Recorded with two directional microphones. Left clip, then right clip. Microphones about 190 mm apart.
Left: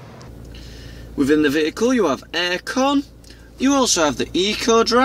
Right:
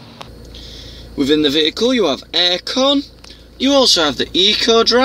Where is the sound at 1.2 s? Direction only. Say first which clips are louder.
Right 3 dB; 10° left (ahead or behind).